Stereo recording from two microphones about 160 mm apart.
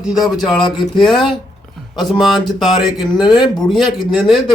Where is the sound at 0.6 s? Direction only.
30° left (ahead or behind).